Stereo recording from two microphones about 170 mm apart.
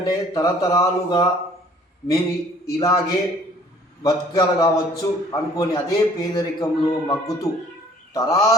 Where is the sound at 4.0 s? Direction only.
20° left (ahead or behind).